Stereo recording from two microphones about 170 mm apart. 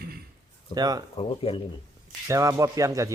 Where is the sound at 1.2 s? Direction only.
35° left (ahead or behind).